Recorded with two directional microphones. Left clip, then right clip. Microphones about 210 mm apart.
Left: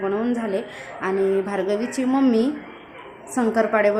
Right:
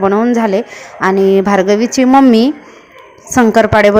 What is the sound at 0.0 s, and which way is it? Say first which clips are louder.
A woman's voice: right 12 dB; 35° right (ahead or behind).